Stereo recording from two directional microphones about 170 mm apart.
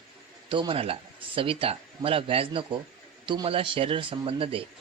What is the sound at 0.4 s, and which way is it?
A man's voice, 30° right (ahead or behind).